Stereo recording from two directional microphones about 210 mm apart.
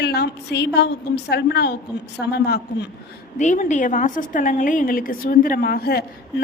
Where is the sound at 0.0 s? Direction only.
50° left (ahead or behind).